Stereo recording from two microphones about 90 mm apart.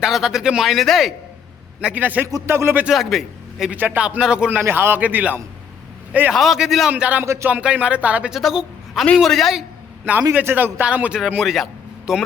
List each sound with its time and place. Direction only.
0.0 s speech: 5° right (ahead or behind)
1.8 s a man's voice: 15° right (ahead or behind)
2.9 s a man's voice: centre (ahead or behind)
3.7 s a man's voice: 20° right (ahead or behind)
4.6 s a man's voice: 25° right (ahead or behind)
6.3 s speech: centre (ahead or behind)
6.9 s a man's voice: 15° right (ahead or behind)
7.3 s speech: 30° right (ahead or behind)
7.5 s a man's voice: 10° right (ahead or behind)
8.3 s a woman's voice: centre (ahead or behind)
10.3 s a man's voice: 20° right (ahead or behind); by 12.2 s centre (ahead or behind)